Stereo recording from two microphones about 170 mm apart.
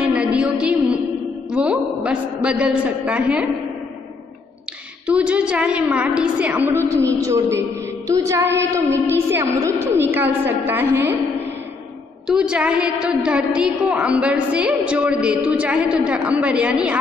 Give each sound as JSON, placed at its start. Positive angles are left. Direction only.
{"t": 0.0, "sound": "a sound", "side_deg": -5}
{"t": 1.5, "sound": "a man's voice", "side_deg": -5}
{"t": 5.0, "sound": "a woman's voice", "side_deg": -5}
{"t": 7.1, "sound": "music", "side_deg": -20}
{"t": 8.7, "sound": "a woman's voice", "side_deg": -15}
{"t": 12.3, "sound": "a woman's voice", "side_deg": -5}